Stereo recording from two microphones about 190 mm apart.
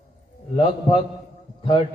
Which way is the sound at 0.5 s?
30° left (ahead or behind).